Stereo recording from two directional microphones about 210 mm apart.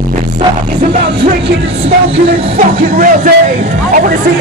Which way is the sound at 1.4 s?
30° right (ahead or behind).